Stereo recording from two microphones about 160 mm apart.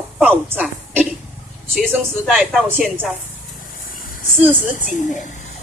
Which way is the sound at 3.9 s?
60° left (ahead or behind).